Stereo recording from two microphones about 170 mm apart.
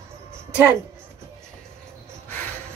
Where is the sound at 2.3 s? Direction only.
10° left (ahead or behind).